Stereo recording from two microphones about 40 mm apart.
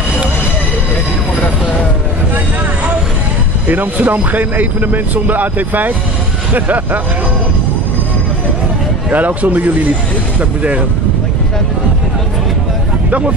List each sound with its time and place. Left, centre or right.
3.6 s speech: right
9.1 s speech: right